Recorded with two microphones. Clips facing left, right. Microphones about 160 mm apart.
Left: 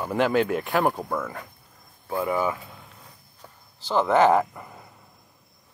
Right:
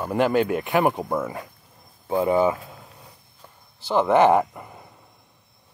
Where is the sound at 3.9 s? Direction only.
10° right (ahead or behind).